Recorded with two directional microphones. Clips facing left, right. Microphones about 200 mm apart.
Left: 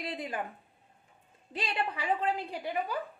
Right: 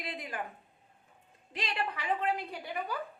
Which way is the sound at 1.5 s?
25° left (ahead or behind).